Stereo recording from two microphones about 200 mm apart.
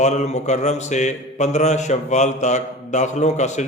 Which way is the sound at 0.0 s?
35° left (ahead or behind).